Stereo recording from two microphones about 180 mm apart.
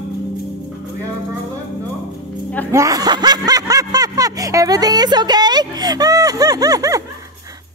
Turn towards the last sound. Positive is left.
turn(degrees=-20)  # may be behind; listen again after turning